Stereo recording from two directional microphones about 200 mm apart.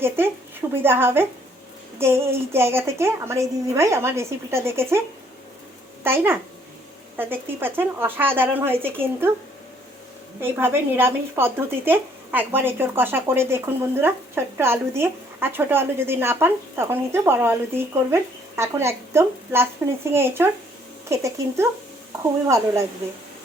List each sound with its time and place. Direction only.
0.2 s a woman's voice: 10° right (ahead or behind)
10.4 s a woman's voice: 10° right (ahead or behind)